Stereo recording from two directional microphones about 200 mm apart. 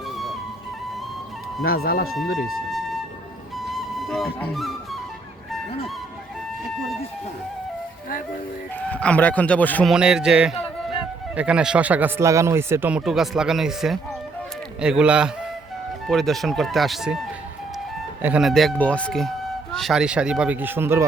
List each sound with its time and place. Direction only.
1.6 s speech: 50° left (ahead or behind)
3.7 s music: centre (ahead or behind)
8.8 s speech: 5° left (ahead or behind)
9.9 s speech: 5° right (ahead or behind)
18.2 s speech: 5° right (ahead or behind)